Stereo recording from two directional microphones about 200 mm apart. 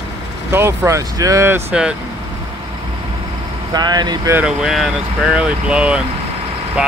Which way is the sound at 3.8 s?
20° right (ahead or behind).